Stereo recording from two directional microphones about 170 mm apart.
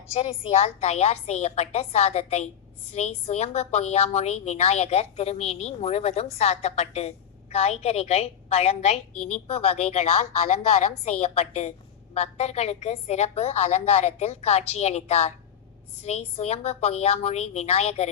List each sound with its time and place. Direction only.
0.2 s a woman's voice: 35° left (ahead or behind)